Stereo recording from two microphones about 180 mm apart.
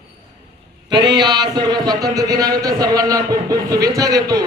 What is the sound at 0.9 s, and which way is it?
A man's voice, 25° right (ahead or behind).